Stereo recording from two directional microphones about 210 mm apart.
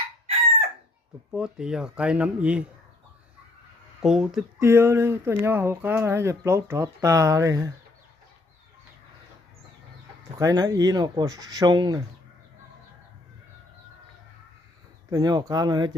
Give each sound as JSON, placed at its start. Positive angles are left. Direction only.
{"t": 1.3, "sound": "speech", "side_deg": -5}
{"t": 4.0, "sound": "speech", "side_deg": -5}
{"t": 10.3, "sound": "speech", "side_deg": -15}
{"t": 15.1, "sound": "speech", "side_deg": -20}